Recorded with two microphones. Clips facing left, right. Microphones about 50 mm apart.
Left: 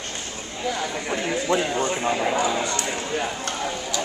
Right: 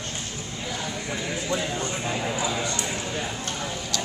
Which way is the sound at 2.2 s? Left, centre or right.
Left.